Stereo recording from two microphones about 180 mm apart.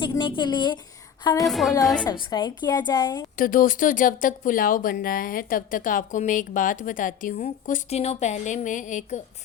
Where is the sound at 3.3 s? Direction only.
50° left (ahead or behind).